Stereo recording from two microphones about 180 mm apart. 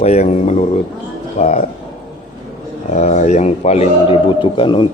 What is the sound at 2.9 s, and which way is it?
A man's voice, 40° left (ahead or behind).